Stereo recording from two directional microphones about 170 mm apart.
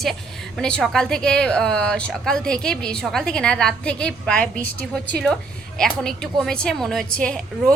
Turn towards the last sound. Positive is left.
turn(degrees=5)  # may be behind; listen again after turning